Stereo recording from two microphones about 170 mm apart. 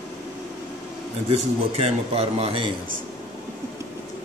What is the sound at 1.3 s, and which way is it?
A man's voice, 35° right (ahead or behind).